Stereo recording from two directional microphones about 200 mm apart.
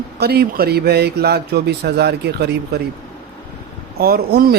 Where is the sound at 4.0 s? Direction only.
50° right (ahead or behind).